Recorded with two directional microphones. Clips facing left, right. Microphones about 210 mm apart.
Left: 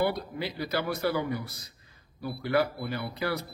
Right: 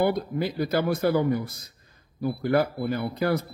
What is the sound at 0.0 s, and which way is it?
A man's voice, 50° right (ahead or behind).